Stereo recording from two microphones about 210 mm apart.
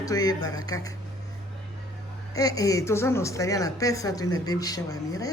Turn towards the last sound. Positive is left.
turn(degrees=15)  # may be behind; listen again after turning